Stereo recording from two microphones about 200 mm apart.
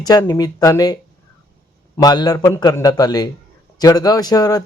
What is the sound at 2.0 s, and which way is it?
A man's voice, 20° left (ahead or behind).